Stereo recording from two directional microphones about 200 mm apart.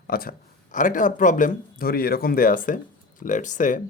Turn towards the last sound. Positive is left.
turn(degrees=40)  # may be behind; listen again after turning